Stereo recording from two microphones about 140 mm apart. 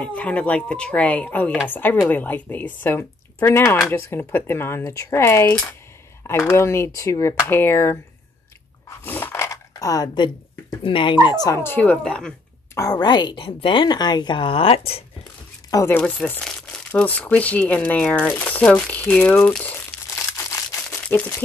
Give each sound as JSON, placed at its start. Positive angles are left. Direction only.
{"t": 0.0, "sound": "speech", "side_deg": 10}
{"t": 8.8, "sound": "dog", "side_deg": 15}
{"t": 10.8, "sound": "speech", "side_deg": 35}
{"t": 12.7, "sound": "a woman's voice", "side_deg": 25}
{"t": 15.7, "sound": "speech", "side_deg": 15}
{"t": 16.0, "sound": "speech", "side_deg": 5}
{"t": 20.9, "sound": "single-lens reflex camera", "side_deg": 15}